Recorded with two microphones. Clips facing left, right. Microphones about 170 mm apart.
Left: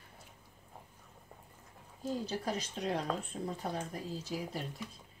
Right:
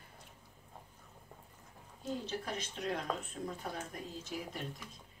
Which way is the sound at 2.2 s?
35° left (ahead or behind).